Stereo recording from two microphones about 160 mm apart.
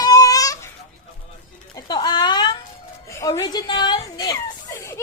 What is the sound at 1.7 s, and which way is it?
Speech, 25° left (ahead or behind).